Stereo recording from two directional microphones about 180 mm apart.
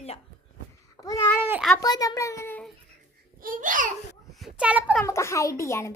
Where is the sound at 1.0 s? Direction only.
20° left (ahead or behind).